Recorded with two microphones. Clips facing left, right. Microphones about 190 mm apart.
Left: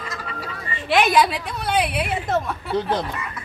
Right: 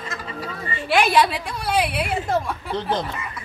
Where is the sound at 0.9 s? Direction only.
Centre (ahead or behind).